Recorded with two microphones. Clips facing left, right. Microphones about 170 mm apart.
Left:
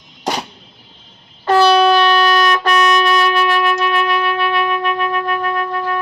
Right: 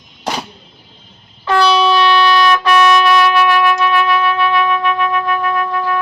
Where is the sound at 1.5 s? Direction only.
45° left (ahead or behind).